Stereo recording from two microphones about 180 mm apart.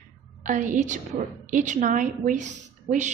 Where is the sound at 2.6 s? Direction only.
40° right (ahead or behind).